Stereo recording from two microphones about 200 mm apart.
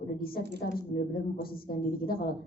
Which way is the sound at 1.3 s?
50° left (ahead or behind).